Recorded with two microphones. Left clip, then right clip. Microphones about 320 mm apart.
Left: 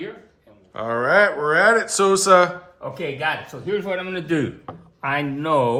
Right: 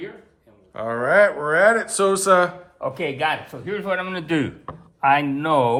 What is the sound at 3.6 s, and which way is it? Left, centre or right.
Speech, right.